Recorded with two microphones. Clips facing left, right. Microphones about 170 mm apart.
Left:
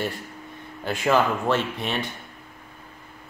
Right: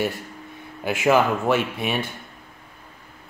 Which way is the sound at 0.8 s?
10° right (ahead or behind).